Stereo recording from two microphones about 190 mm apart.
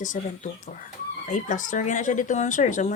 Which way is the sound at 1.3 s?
40° left (ahead or behind).